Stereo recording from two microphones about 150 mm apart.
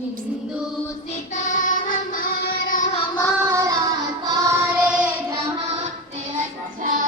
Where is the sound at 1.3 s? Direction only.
55° left (ahead or behind); by 2.9 s 70° left (ahead or behind).